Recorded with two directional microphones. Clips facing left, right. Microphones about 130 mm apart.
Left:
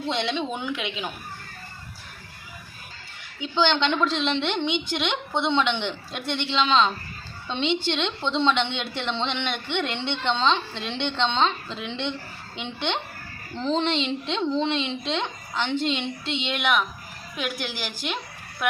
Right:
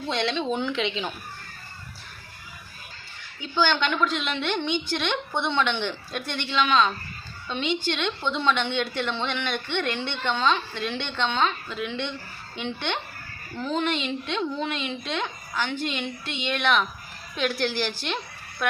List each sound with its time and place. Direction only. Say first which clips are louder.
0.1 s a woman's voice: right 2 dB; 20° left (ahead or behind)
3.4 s a woman's voice: left 2 dB; 25° left (ahead or behind)